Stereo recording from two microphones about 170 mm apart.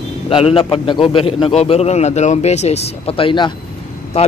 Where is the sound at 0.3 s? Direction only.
35° left (ahead or behind).